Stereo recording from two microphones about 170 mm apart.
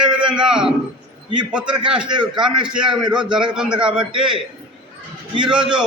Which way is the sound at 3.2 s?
25° right (ahead or behind).